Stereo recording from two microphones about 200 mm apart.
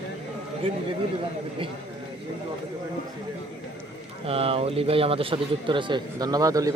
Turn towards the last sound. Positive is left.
turn(degrees=-15)  # may be behind; listen again after turning